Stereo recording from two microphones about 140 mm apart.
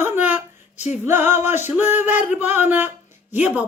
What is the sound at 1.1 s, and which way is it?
A woman's voice, 15° right (ahead or behind).